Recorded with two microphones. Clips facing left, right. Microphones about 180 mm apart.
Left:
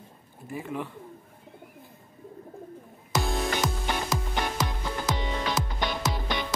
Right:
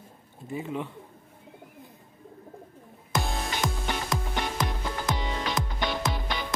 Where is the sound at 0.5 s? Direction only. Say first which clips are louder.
Right 1 dB; 20° right (ahead or behind).